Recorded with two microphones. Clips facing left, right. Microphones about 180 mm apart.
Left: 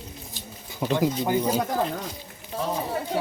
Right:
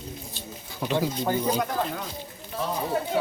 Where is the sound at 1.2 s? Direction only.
5° left (ahead or behind).